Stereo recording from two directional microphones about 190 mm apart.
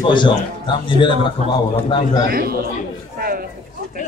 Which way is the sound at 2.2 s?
50° right (ahead or behind).